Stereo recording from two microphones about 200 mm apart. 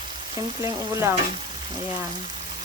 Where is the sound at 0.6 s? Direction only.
10° right (ahead or behind).